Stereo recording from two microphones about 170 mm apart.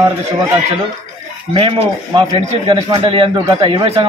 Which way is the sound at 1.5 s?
35° right (ahead or behind).